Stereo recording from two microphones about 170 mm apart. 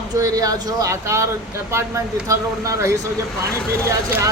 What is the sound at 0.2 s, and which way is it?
Speech, 20° right (ahead or behind).